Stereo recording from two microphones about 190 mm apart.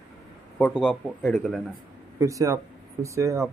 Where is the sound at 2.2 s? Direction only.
15° right (ahead or behind).